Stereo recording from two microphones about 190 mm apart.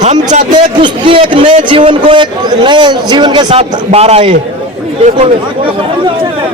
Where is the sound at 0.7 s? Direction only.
25° right (ahead or behind).